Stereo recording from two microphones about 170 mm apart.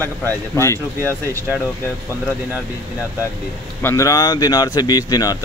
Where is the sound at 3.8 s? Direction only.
15° left (ahead or behind).